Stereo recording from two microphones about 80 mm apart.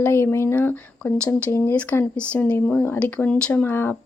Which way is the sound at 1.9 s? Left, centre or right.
Left.